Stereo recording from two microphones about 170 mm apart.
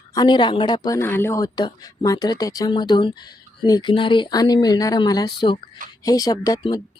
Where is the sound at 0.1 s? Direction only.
25° left (ahead or behind).